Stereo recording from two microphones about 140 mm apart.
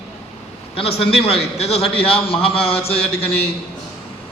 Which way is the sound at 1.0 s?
40° left (ahead or behind).